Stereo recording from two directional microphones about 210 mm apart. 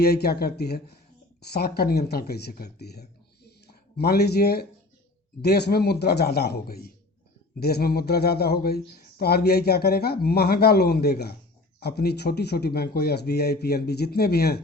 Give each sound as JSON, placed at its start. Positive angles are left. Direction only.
{"t": 0.0, "sound": "speech", "side_deg": 50}